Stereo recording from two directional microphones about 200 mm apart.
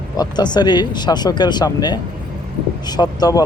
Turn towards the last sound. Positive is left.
turn(degrees=20)  # may be behind; listen again after turning